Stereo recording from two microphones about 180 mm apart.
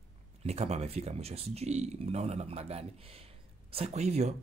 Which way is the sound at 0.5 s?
35° right (ahead or behind).